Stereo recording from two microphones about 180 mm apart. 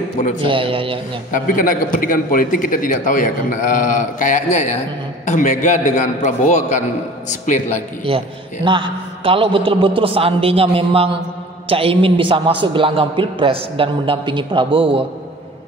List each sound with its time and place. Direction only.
0.4 s a man's voice: 30° right (ahead or behind)
1.3 s a man's voice: 50° left (ahead or behind)
8.1 s a man's voice: 30° right (ahead or behind)